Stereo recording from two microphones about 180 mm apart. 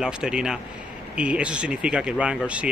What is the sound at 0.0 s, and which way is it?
Speech, 5° right (ahead or behind).